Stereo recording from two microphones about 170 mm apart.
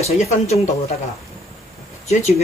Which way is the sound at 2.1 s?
40° left (ahead or behind).